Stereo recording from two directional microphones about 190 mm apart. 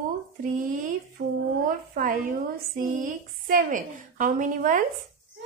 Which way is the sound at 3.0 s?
45° right (ahead or behind).